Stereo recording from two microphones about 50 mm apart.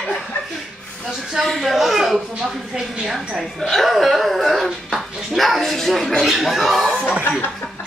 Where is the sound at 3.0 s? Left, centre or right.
Centre.